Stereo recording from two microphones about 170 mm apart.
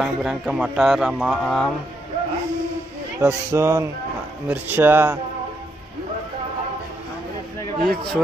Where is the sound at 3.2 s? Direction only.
15° right (ahead or behind).